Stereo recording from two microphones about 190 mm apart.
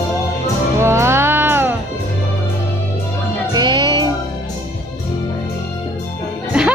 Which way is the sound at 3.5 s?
25° right (ahead or behind).